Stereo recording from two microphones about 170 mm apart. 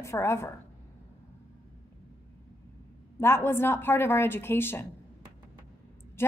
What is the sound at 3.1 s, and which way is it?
A woman's voice, 15° left (ahead or behind).